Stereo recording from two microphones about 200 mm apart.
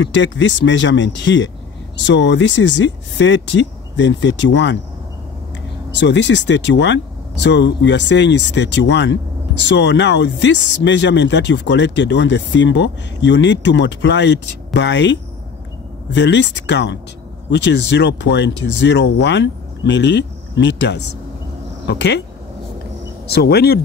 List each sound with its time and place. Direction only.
0.0 s speech: 65° left (ahead or behind)
5.9 s speech: 65° left (ahead or behind)
16.2 s speech: 60° left (ahead or behind)
23.3 s speech: 55° left (ahead or behind)